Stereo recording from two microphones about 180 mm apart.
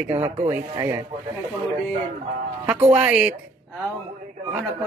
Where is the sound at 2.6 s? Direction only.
10° right (ahead or behind).